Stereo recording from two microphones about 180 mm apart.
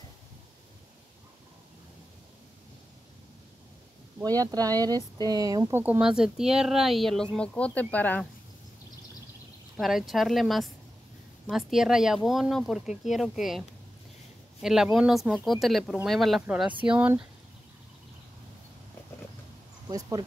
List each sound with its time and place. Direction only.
4.4 s speech: 20° right (ahead or behind); by 8.3 s 10° left (ahead or behind)
9.8 s speech: centre (ahead or behind)
19.9 s speech: 20° right (ahead or behind)